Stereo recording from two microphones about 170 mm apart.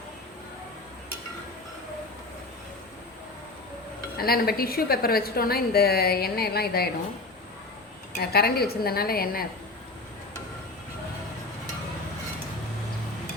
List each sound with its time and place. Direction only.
4.2 s a woman's voice: 65° left (ahead or behind)
8.2 s a woman's voice: 65° left (ahead or behind)